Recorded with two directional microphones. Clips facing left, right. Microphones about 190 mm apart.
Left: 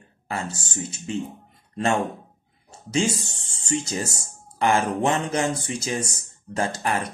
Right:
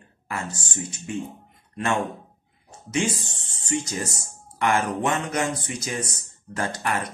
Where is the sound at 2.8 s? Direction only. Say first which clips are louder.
Left 2 dB; 30° left (ahead or behind).